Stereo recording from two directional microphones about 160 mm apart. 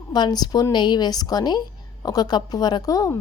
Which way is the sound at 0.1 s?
25° left (ahead or behind).